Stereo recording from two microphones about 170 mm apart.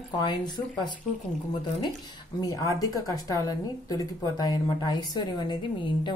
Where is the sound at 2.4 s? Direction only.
20° left (ahead or behind).